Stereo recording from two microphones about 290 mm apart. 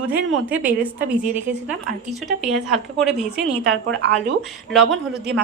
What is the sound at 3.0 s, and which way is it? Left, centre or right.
Speech, centre.